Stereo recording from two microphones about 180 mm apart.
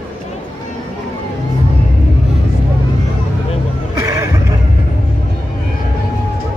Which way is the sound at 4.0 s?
15° right (ahead or behind).